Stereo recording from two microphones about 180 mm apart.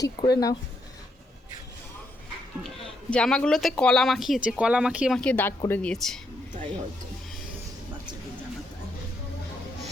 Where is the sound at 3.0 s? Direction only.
5° left (ahead or behind).